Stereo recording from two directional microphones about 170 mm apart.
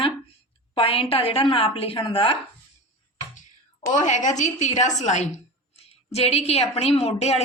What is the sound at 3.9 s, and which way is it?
A woman's voice, 45° left (ahead or behind).